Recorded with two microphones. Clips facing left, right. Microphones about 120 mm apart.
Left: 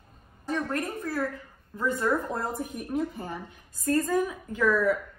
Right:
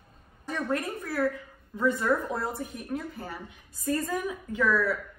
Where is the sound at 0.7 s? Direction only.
15° right (ahead or behind).